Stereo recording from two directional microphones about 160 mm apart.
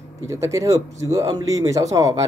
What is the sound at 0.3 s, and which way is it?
Speech, 20° right (ahead or behind).